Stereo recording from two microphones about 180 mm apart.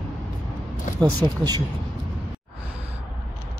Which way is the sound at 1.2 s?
15° right (ahead or behind).